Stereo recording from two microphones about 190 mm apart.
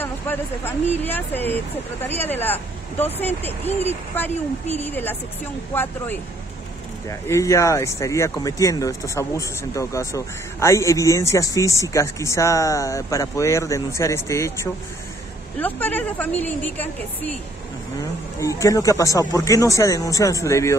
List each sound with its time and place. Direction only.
0.0 s speech: 10° left (ahead or behind)
18.4 s speech: 15° left (ahead or behind)